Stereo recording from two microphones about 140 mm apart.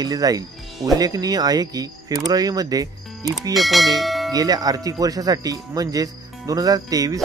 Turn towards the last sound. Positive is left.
turn(degrees=-25)  # may be behind; listen again after turning